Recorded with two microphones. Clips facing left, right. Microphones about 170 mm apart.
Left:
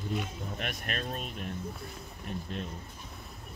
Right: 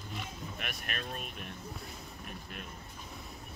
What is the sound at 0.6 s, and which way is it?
Speech, 45° left (ahead or behind).